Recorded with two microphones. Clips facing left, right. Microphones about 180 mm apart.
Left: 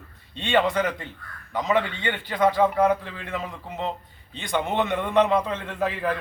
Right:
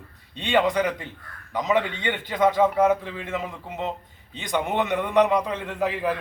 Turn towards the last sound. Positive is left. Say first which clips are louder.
# right 1 dB
turn(degrees=-15)  # may be behind; listen again after turning